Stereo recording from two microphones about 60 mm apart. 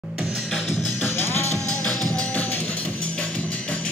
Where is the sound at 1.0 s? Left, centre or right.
Left.